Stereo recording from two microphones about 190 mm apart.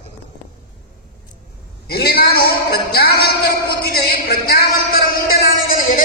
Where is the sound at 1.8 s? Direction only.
55° left (ahead or behind).